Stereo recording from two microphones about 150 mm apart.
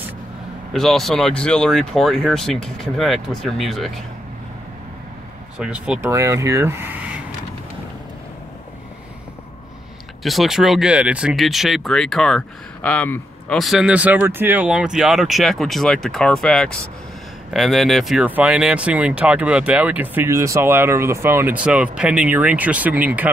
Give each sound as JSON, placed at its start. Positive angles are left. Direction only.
{"t": 0.7, "sound": "speech", "side_deg": 0}
{"t": 5.6, "sound": "speech", "side_deg": -5}
{"t": 5.9, "sound": "speech", "side_deg": -20}
{"t": 10.2, "sound": "speech", "side_deg": 0}